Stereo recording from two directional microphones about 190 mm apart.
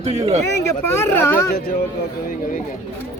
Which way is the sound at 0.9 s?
10° left (ahead or behind).